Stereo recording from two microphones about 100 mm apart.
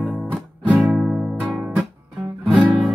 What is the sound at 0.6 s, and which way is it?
Music, 10° right (ahead or behind).